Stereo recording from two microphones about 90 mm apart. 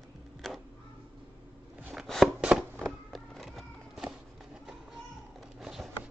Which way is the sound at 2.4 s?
10° right (ahead or behind).